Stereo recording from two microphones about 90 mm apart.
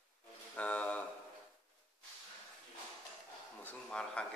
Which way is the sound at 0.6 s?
15° left (ahead or behind).